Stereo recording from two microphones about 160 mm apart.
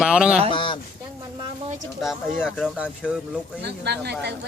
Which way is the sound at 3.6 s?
90° right.